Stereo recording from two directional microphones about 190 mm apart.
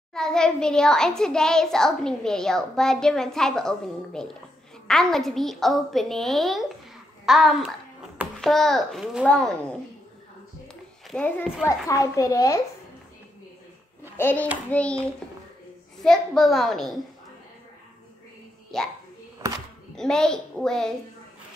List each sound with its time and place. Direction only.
0.1 s a child's voice: 5° left (ahead or behind)
10.7 s a sound: 5° left (ahead or behind)
11.6 s a child's voice: 15° left (ahead or behind)
14.1 s a child's voice: 10° left (ahead or behind)
18.7 s a child's voice: centre (ahead or behind)
20.0 s a child's voice: 5° left (ahead or behind)